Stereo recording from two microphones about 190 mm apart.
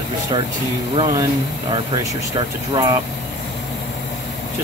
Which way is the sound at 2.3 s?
25° right (ahead or behind).